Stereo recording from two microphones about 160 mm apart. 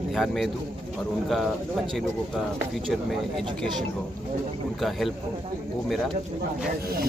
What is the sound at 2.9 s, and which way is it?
Speech, centre (ahead or behind).